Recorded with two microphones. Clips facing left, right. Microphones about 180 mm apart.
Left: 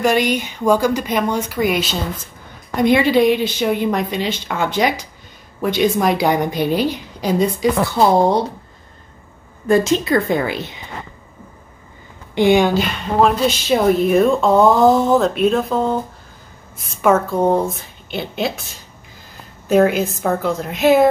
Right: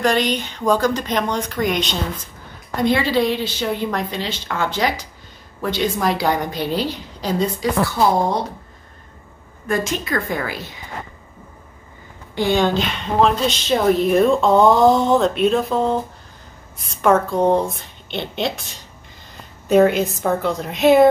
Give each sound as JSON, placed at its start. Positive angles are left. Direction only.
{"t": 0.0, "sound": "a woman's voice", "side_deg": 10}
{"t": 9.7, "sound": "a woman's voice", "side_deg": 25}
{"t": 12.4, "sound": "a woman's voice", "side_deg": 15}